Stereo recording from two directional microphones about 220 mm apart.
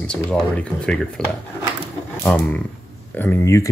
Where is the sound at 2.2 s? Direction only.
5° left (ahead or behind).